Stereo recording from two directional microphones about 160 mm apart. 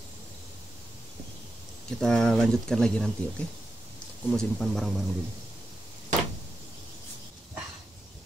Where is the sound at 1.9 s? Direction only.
5° left (ahead or behind).